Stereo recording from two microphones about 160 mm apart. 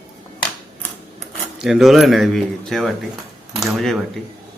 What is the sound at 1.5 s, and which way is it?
Speech, centre (ahead or behind).